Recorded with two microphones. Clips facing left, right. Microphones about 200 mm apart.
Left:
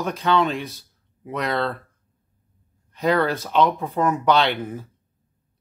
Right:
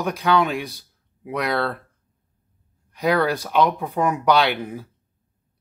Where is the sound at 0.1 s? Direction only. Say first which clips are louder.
Right 1 dB; 10° right (ahead or behind).